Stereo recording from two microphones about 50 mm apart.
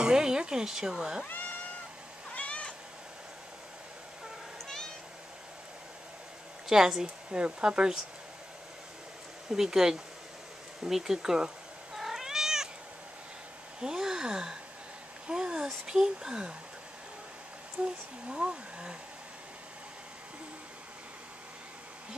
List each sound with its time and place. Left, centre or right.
0.0 s speech: centre
2.3 s cat: left
4.6 s meow: centre
6.7 s a woman's voice: centre
9.5 s a woman's voice: centre
10.8 s cat: centre
13.7 s gasp: centre
15.2 s a sound: centre
15.9 s a woman's voice: centre
17.8 s speech: right